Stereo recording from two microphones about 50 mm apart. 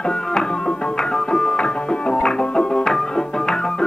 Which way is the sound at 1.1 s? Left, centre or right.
Centre.